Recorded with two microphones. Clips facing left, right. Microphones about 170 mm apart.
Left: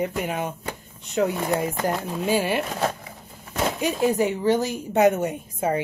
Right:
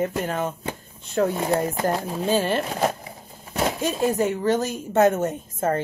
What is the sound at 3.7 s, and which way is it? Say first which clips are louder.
Speech: left 2 dB; 15° left (ahead or behind).